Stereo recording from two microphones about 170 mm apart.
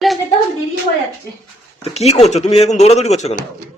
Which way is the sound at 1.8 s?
40° left (ahead or behind).